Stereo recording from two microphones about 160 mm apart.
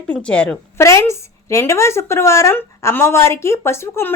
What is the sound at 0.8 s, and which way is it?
Speech, 15° left (ahead or behind).